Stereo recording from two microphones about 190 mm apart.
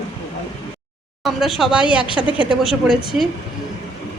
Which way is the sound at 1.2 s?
Centre (ahead or behind).